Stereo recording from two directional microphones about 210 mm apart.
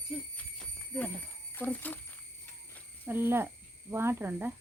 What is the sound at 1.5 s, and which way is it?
Speech, 10° left (ahead or behind).